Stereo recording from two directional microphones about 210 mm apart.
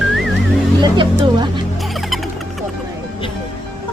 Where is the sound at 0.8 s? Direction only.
20° right (ahead or behind).